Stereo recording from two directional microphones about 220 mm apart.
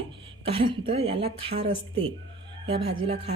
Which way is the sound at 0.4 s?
25° right (ahead or behind).